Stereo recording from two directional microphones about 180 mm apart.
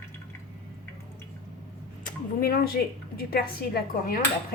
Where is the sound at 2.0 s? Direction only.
55° left (ahead or behind).